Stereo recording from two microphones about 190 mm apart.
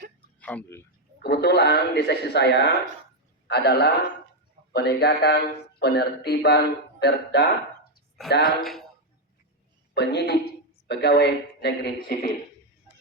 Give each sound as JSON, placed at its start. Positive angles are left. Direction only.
{"t": 0.3, "sound": "speech", "side_deg": 10}
{"t": 1.2, "sound": "a man's voice", "side_deg": 60}
{"t": 8.6, "sound": "speech", "side_deg": 0}
{"t": 9.9, "sound": "a woman's voice", "side_deg": 60}